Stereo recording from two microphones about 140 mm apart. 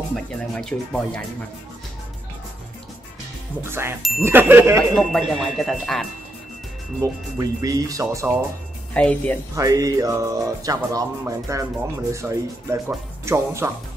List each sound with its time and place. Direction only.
0.1 s speech: 5° left (ahead or behind)
3.6 s speech: 15° right (ahead or behind)
4.9 s speech: centre (ahead or behind)
7.0 s speech: 25° right (ahead or behind)
8.9 s speech: 10° left (ahead or behind)
9.6 s speech: 25° right (ahead or behind)